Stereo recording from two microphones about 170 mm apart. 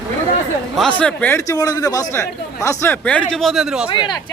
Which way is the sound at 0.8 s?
5° left (ahead or behind).